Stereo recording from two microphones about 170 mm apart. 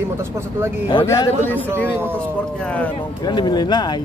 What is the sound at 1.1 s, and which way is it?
Speech, 15° left (ahead or behind).